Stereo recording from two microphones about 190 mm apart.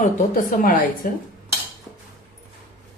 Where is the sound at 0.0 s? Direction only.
45° left (ahead or behind).